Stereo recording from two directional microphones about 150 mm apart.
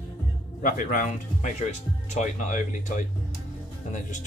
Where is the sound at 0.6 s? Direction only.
60° left (ahead or behind).